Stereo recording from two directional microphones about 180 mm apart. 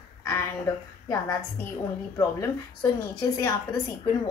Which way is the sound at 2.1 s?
20° left (ahead or behind).